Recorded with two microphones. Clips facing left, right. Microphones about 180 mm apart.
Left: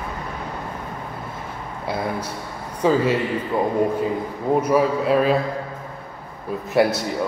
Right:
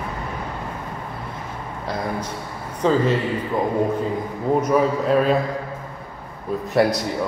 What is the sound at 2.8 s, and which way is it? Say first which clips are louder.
Speech: even; 10° left (ahead or behind).